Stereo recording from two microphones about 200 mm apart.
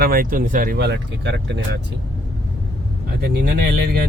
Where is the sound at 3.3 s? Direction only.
55° right (ahead or behind).